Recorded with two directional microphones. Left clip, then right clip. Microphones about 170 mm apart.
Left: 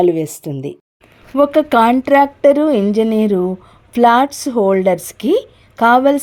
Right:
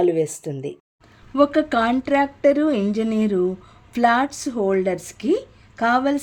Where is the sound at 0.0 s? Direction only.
45° left (ahead or behind).